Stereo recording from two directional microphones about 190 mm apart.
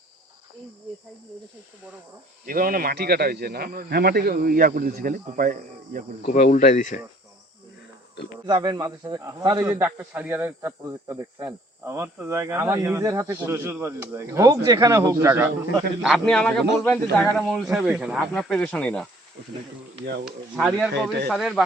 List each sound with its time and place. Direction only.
2.5 s speech: 50° right (ahead or behind)
6.2 s speech: 45° left (ahead or behind)
8.4 s speech: 20° right (ahead or behind)
16.0 s speech: centre (ahead or behind)
20.6 s speech: centre (ahead or behind)